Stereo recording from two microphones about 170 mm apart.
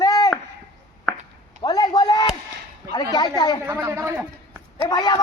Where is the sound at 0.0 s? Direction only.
20° left (ahead or behind).